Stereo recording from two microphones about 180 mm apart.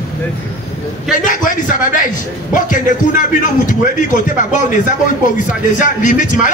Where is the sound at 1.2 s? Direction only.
45° left (ahead or behind).